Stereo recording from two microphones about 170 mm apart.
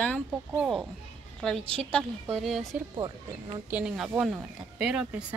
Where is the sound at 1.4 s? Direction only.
5° left (ahead or behind).